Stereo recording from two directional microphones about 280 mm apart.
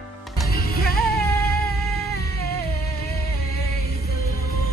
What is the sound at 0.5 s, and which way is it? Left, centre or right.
Music, left.